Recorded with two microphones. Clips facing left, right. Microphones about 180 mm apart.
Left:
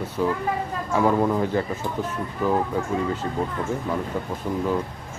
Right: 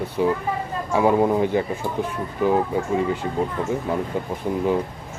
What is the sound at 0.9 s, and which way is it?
Speech, 15° right (ahead or behind).